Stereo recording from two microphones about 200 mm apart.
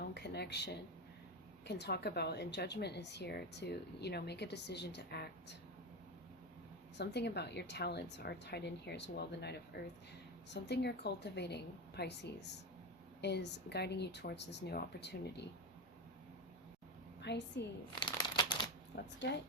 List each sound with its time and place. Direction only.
0.0 s a sound: 55° left (ahead or behind)
1.6 s speech: 55° left (ahead or behind)
6.9 s speech: 55° left (ahead or behind)
17.2 s speech: 60° left (ahead or behind)
18.0 s crumpling: 20° left (ahead or behind)
18.9 s speech: 55° left (ahead or behind)